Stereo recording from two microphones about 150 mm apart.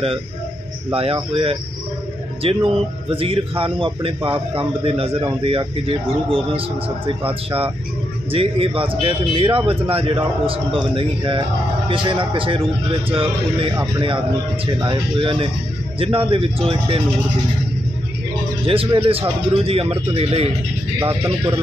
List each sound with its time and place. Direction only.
0.9 s a man's voice: 35° right (ahead or behind)
8.3 s a man's voice: 40° right (ahead or behind)
18.7 s a man's voice: 35° right (ahead or behind)
21.0 s speech: 20° right (ahead or behind)